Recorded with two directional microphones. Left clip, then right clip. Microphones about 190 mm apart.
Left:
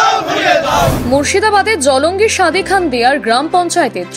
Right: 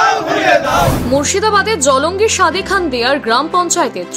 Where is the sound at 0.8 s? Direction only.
Centre (ahead or behind).